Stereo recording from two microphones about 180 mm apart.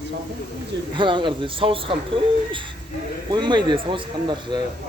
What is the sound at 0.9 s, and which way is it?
Speech, 25° right (ahead or behind).